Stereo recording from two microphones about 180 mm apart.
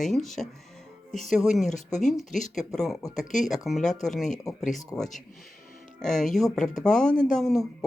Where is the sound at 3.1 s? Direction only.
45° left (ahead or behind).